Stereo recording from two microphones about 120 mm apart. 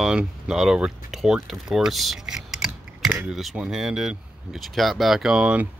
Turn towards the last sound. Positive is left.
turn(degrees=-10)  # may be behind; listen again after turning